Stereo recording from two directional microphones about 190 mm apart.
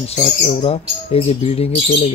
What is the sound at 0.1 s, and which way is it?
Speech, 30° left (ahead or behind).